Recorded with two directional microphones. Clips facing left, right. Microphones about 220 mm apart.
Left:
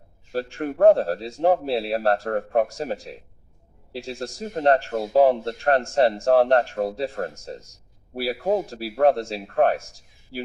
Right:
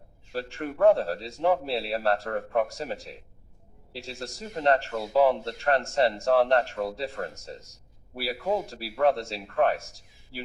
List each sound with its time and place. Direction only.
0.3 s a man's voice: 45° left (ahead or behind)